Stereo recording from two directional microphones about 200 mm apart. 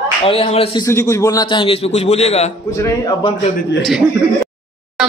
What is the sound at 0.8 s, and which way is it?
A man's voice, 15° left (ahead or behind).